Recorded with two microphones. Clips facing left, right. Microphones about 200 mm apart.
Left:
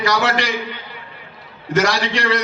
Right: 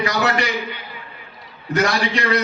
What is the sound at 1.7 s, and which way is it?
Speech, 90° left.